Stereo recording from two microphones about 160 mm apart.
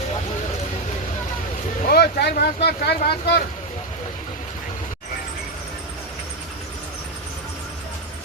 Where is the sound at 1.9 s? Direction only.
85° left.